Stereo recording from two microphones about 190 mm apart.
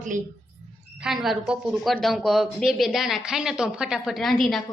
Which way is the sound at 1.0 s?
Centre (ahead or behind).